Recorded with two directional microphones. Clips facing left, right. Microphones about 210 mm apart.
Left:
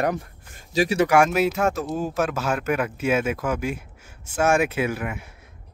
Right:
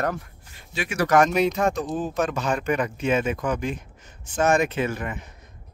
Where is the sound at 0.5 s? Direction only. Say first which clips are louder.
Left 9 dB; 40° left (ahead or behind).